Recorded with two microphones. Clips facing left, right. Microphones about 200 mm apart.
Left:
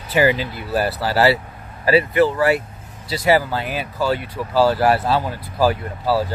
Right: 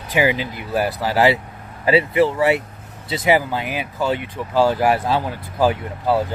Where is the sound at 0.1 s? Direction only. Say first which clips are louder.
Left 2 dB; 15° right (ahead or behind).